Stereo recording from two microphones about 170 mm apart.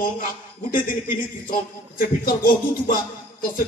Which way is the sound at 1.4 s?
55° left (ahead or behind).